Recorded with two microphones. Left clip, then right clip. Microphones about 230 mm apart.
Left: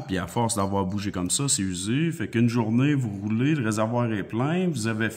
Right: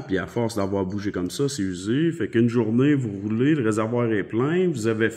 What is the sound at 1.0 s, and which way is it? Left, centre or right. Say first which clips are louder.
Speech: right 3 dB; left.